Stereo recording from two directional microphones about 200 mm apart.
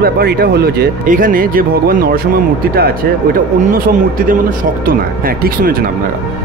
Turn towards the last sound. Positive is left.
turn(degrees=-45)  # may be behind; listen again after turning